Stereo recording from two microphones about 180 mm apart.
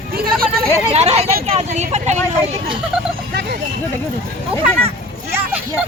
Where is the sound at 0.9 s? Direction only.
35° right (ahead or behind).